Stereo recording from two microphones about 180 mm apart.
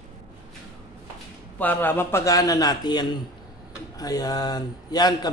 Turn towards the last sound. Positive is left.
turn(degrees=20)  # may be behind; listen again after turning